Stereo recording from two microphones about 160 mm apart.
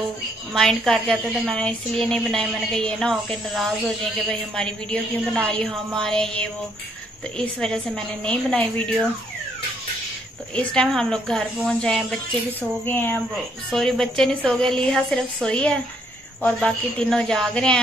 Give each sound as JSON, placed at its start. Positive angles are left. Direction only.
{"t": 0.6, "sound": "a woman's voice", "side_deg": 5}
{"t": 10.5, "sound": "a woman's voice", "side_deg": 5}